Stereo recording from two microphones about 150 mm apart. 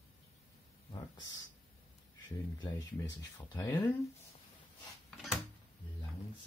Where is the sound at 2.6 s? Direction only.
25° left (ahead or behind).